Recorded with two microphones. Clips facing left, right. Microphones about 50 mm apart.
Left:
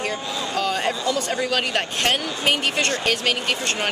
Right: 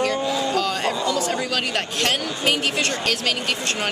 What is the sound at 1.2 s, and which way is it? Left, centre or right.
Speech, centre.